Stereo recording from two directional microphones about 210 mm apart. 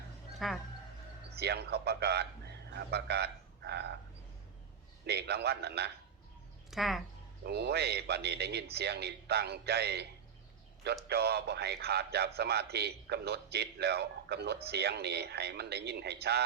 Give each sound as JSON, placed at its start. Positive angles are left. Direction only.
{"t": 0.3, "sound": "speech", "side_deg": 0}
{"t": 1.4, "sound": "a man's voice", "side_deg": -50}
{"t": 5.0, "sound": "a man's voice", "side_deg": -50}
{"t": 6.7, "sound": "speech", "side_deg": 0}
{"t": 7.4, "sound": "a man's voice", "side_deg": -50}
{"t": 11.1, "sound": "a man's voice", "side_deg": -50}